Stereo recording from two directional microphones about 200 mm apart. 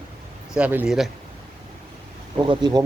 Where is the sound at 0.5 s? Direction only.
5° right (ahead or behind).